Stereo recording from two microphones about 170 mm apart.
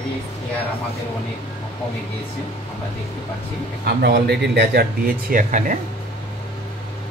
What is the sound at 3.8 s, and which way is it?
Speech, 75° right (ahead or behind).